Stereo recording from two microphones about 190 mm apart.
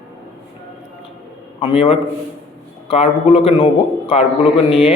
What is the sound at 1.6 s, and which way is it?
A man's voice, 30° left (ahead or behind).